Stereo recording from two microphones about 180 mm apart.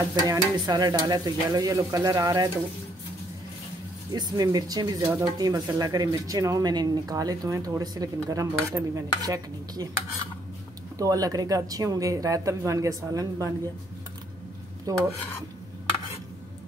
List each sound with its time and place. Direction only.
0.1 s speech: 20° right (ahead or behind)
4.1 s speech: 20° right (ahead or behind)
11.0 s speech: 20° right (ahead or behind)
14.9 s speech: 20° right (ahead or behind)